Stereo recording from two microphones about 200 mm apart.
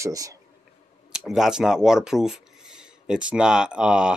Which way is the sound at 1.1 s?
Centre (ahead or behind).